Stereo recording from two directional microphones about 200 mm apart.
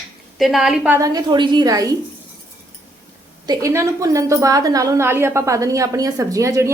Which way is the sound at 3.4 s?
20° right (ahead or behind).